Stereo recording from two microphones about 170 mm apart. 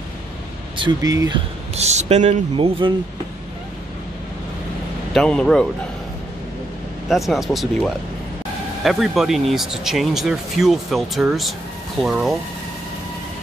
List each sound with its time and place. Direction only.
0.7 s speech: 25° right (ahead or behind)
1.8 s speech: 40° right (ahead or behind)
5.1 s speech: 5° left (ahead or behind)
7.1 s speech: centre (ahead or behind)